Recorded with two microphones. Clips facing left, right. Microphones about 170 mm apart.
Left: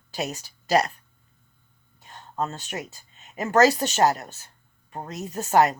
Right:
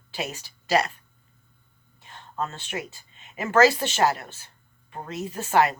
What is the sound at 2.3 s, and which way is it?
Speech, 40° left (ahead or behind).